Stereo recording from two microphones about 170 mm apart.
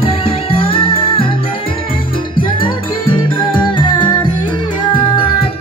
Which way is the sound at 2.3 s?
30° left (ahead or behind).